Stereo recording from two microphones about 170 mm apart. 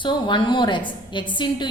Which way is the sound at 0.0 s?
30° left (ahead or behind).